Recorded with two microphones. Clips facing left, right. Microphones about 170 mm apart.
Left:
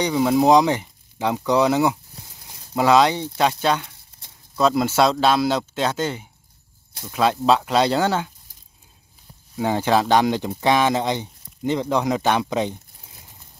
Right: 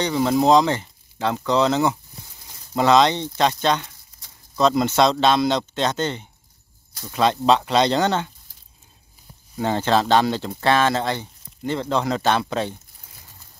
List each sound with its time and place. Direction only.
0.0 s speech: 10° left (ahead or behind)
9.6 s speech: 10° left (ahead or behind)